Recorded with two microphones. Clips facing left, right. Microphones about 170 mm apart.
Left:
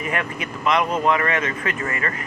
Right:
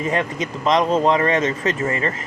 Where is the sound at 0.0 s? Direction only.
25° right (ahead or behind).